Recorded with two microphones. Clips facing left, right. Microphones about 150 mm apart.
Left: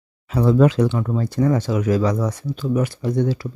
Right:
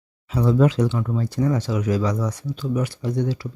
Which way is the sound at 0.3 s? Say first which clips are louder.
Left 3 dB; 55° left (ahead or behind).